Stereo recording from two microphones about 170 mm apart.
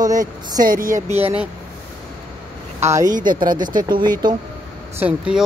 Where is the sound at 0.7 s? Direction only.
55° right (ahead or behind).